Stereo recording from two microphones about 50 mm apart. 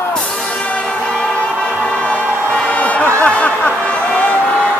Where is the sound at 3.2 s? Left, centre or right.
Left.